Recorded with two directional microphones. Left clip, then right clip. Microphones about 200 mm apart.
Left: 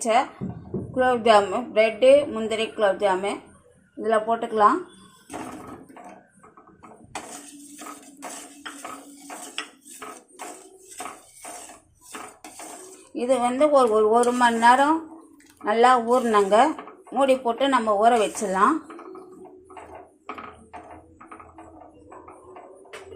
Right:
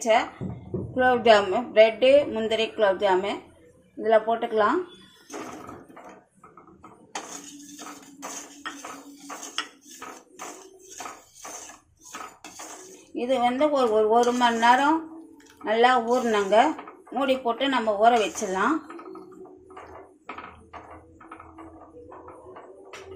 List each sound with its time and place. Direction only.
0.0 s speech: 15° left (ahead or behind)
13.1 s speech: 20° left (ahead or behind)